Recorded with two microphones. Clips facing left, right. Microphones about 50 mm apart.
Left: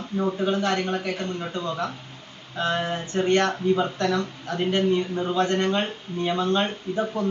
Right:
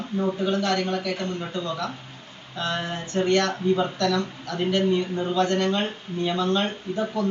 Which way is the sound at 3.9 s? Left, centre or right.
Left.